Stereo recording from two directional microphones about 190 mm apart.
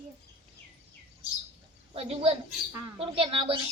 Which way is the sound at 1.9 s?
30° right (ahead or behind).